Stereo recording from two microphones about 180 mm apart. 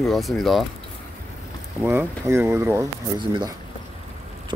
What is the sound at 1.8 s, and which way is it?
Speech, 15° right (ahead or behind).